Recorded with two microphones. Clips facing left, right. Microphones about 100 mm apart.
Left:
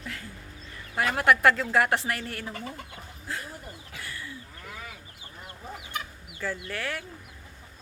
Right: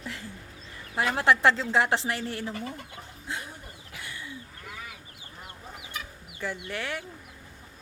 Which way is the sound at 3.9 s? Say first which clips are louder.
Even; 20° right (ahead or behind).